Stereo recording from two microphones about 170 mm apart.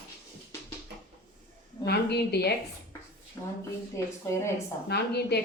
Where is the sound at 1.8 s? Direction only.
75° left (ahead or behind).